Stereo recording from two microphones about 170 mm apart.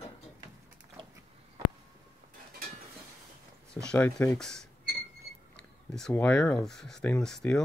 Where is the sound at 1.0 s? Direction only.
30° right (ahead or behind).